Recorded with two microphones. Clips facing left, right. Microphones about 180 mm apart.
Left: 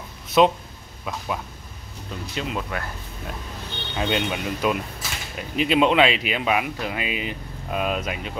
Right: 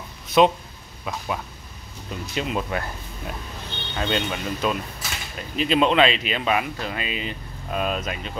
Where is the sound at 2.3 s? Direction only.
20° right (ahead or behind).